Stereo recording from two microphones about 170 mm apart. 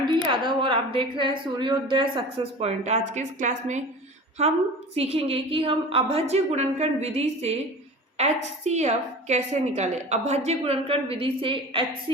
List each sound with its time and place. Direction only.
0.0 s a woman's voice: 25° right (ahead or behind); by 3.8 s 45° right (ahead or behind)
4.9 s a woman's voice: 35° right (ahead or behind)